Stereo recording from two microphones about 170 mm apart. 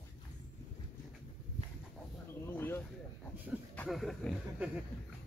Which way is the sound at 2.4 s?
10° left (ahead or behind).